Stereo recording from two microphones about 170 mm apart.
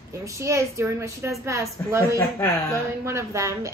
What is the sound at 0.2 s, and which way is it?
A woman's voice, 15° right (ahead or behind).